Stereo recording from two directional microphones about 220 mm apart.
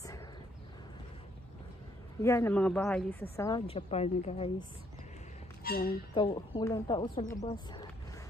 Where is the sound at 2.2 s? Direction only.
10° left (ahead or behind).